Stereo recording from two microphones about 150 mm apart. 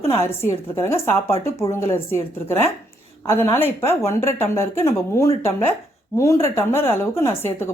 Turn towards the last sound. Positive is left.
turn(degrees=15)  # may be behind; listen again after turning